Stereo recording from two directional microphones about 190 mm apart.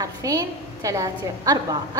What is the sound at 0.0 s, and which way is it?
A woman's voice, 15° right (ahead or behind).